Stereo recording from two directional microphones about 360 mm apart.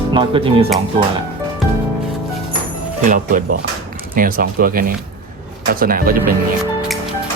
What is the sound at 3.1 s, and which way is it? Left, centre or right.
Speech, right.